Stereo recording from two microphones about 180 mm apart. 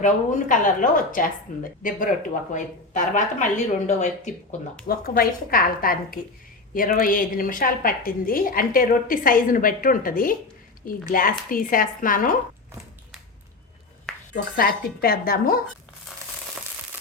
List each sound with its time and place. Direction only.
0.0 s a woman's voice: 45° left (ahead or behind)
4.9 s a woman's voice: 55° left (ahead or behind)
14.3 s speech: 55° left (ahead or behind)